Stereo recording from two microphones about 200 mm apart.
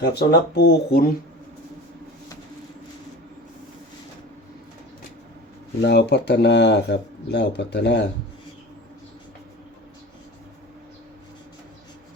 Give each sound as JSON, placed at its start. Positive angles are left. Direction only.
{"t": 0.0, "sound": "speech", "side_deg": 55}
{"t": 5.8, "sound": "speech", "side_deg": 60}